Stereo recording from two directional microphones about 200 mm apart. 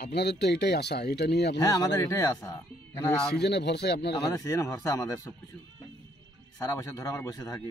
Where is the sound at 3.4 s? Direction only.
55° left (ahead or behind).